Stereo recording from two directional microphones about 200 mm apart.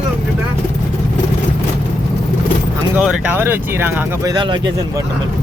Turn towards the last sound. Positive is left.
turn(degrees=-20)  # may be behind; listen again after turning